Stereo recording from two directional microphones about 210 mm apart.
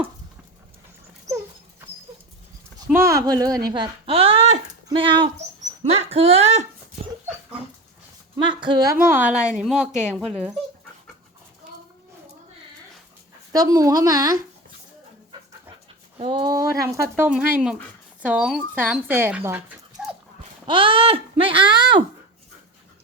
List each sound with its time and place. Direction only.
2.9 s speech: 15° right (ahead or behind); by 6.7 s 30° right (ahead or behind)
8.4 s speech: 20° right (ahead or behind)
9.0 s a woman's voice: 5° right (ahead or behind)
13.5 s speech: 15° right (ahead or behind)
16.1 s speech: 25° right (ahead or behind); by 20.1 s 10° right (ahead or behind)
20.7 s speech: 25° right (ahead or behind)